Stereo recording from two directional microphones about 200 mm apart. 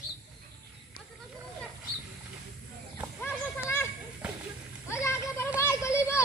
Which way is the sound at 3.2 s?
10° left (ahead or behind).